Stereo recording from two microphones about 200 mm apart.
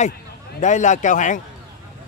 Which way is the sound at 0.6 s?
35° left (ahead or behind).